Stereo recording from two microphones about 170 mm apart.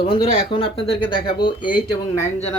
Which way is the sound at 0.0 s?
30° left (ahead or behind).